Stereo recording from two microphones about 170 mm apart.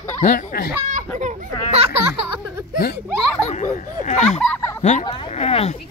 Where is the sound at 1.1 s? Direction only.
45° right (ahead or behind).